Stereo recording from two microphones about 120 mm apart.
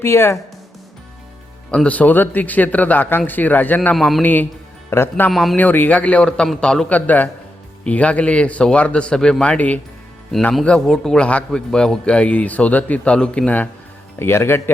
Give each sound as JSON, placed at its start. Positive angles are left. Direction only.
{"t": 0.0, "sound": "speech", "side_deg": 20}
{"t": 1.7, "sound": "a man's voice", "side_deg": 10}
{"t": 3.9, "sound": "speech", "side_deg": 0}
{"t": 4.2, "sound": "a man's voice", "side_deg": 15}
{"t": 5.3, "sound": "speech", "side_deg": 0}
{"t": 5.5, "sound": "a man's voice", "side_deg": 15}